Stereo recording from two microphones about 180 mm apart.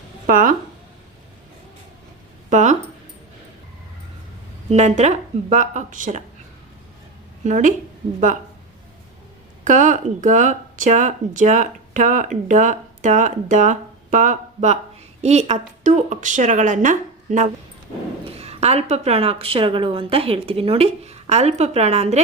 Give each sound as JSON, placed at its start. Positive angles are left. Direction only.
{"t": 0.3, "sound": "speech", "side_deg": -50}
{"t": 2.5, "sound": "speech", "side_deg": -40}
{"t": 4.7, "sound": "speech", "side_deg": -40}
{"t": 7.4, "sound": "a woman's voice", "side_deg": -45}
{"t": 9.6, "sound": "speech", "side_deg": -45}